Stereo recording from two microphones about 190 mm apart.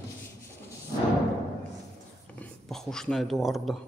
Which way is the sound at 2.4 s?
Centre (ahead or behind).